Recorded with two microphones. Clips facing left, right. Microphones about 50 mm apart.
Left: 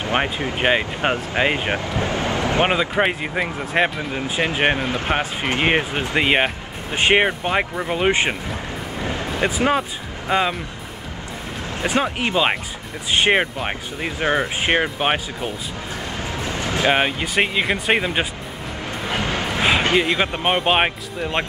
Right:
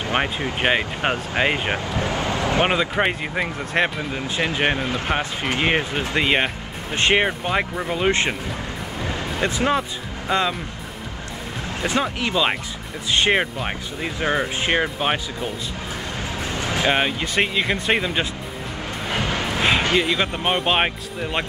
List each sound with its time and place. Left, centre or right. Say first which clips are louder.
0.2 s speech: left 1 dB; centre
2.0 s speech: left 1 dB; left
2.6 s speech: left 2 dB; centre
11.8 s speech: left 2 dB; left
13.2 s speech: left 2 dB; centre
16.4 s music: left 1 dB; left
16.8 s speech: left 2 dB; centre
19.1 s a sound: even; left
20.1 s speech: left 2 dB; centre